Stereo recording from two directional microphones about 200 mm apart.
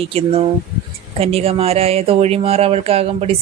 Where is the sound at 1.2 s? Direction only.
30° right (ahead or behind).